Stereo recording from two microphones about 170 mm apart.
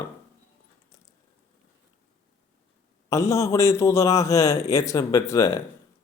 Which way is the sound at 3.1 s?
15° left (ahead or behind).